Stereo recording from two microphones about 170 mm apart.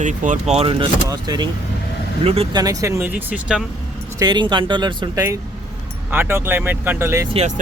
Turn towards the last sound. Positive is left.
turn(degrees=-15)  # may be behind; listen again after turning